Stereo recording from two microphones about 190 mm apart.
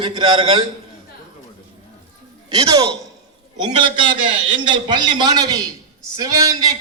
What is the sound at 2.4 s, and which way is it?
A man's voice, 20° right (ahead or behind).